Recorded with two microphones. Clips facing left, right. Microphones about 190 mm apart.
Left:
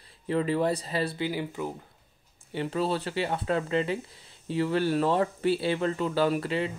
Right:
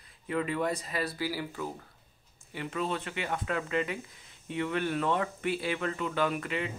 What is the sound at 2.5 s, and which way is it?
Speech, 35° left (ahead or behind).